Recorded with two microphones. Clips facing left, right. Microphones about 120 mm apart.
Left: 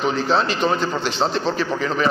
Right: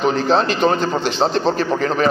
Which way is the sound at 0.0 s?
50° right (ahead or behind).